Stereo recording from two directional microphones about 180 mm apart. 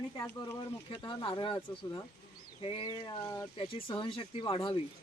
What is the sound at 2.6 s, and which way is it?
Speech, 30° left (ahead or behind).